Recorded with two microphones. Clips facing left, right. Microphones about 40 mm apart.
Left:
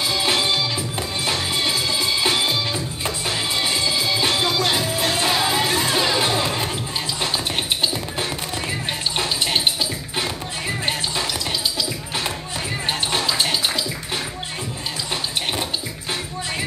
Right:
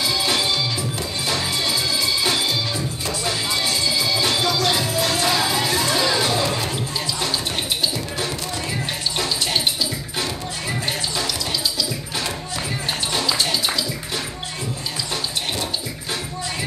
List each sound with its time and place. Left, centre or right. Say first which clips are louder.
0.0 s music: left 1 dB; centre
9.1 s a sound: left 1 dB; centre
13.1 s music: right 1 dB; centre